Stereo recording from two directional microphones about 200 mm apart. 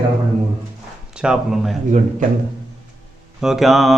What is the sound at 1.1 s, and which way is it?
Speech, 5° right (ahead or behind).